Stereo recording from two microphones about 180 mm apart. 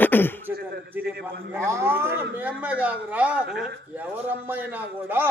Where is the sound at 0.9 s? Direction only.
10° right (ahead or behind).